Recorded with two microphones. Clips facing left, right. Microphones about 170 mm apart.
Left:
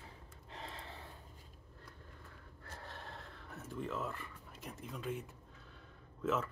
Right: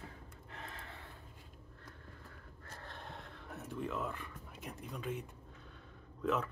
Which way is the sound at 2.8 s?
5° left (ahead or behind).